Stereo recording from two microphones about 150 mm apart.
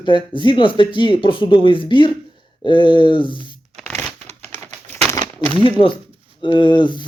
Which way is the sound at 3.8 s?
5° left (ahead or behind).